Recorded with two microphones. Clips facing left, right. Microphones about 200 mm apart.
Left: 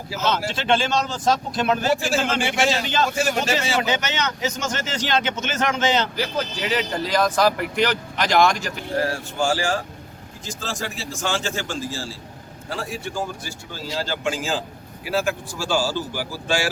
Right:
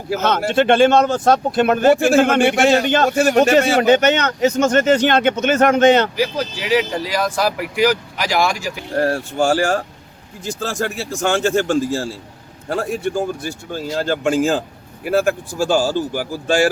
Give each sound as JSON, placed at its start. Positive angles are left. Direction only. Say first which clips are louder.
{"t": 0.1, "sound": "speech", "louder": "right 6 dB", "side_deg": -60}
{"t": 6.1, "sound": "speech", "louder": "right 5 dB", "side_deg": -10}
{"t": 9.0, "sound": "speech", "louder": "right 6 dB", "side_deg": -60}